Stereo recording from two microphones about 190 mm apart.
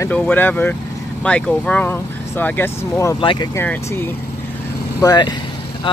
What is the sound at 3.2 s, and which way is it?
Speech, 25° left (ahead or behind).